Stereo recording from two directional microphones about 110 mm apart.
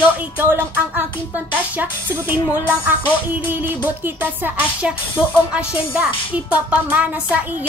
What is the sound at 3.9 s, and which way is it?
Speech, 15° right (ahead or behind).